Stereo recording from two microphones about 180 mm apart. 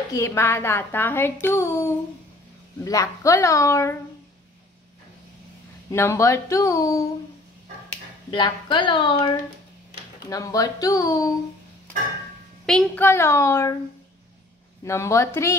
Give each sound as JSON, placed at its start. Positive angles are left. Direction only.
{"t": 0.1, "sound": "a woman's voice", "side_deg": 15}
{"t": 5.9, "sound": "a woman's voice", "side_deg": 15}
{"t": 8.3, "sound": "a woman's voice", "side_deg": 25}
{"t": 10.3, "sound": "a woman's voice", "side_deg": 20}
{"t": 12.6, "sound": "a woman's voice", "side_deg": 5}
{"t": 14.9, "sound": "a woman's voice", "side_deg": 15}